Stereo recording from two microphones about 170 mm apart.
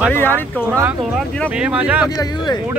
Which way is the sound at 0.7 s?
15° right (ahead or behind).